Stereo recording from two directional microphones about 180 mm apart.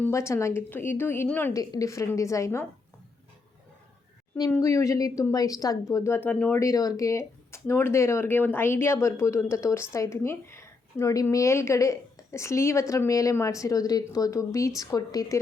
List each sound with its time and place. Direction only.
0.0 s speech: 15° left (ahead or behind)
4.5 s speech: 15° left (ahead or behind)